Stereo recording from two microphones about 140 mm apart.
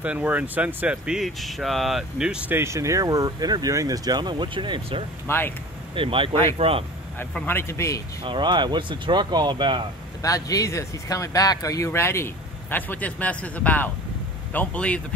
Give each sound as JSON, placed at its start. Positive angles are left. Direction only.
{"t": 0.0, "sound": "speech", "side_deg": -10}
{"t": 5.2, "sound": "speech", "side_deg": 15}
{"t": 5.9, "sound": "speech", "side_deg": -40}
{"t": 7.2, "sound": "speech", "side_deg": 15}
{"t": 8.2, "sound": "speech", "side_deg": -35}
{"t": 10.2, "sound": "speech", "side_deg": 25}